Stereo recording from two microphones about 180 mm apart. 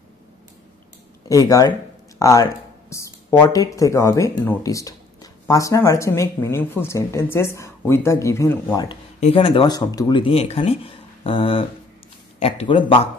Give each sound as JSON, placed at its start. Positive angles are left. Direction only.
{"t": 1.3, "sound": "speech", "side_deg": 20}
{"t": 9.2, "sound": "speech", "side_deg": 30}